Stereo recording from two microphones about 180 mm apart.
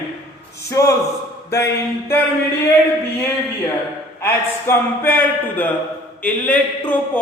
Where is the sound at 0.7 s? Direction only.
15° left (ahead or behind).